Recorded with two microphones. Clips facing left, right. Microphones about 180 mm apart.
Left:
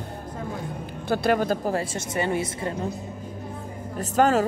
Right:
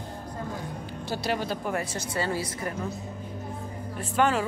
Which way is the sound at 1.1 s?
55° left (ahead or behind).